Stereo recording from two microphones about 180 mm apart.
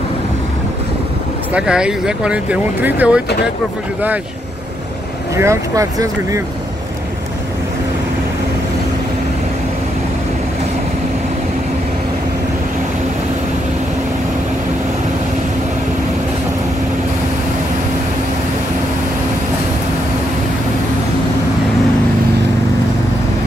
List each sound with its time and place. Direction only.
1.5 s speech: 5° right (ahead or behind)
5.3 s speech: 15° right (ahead or behind)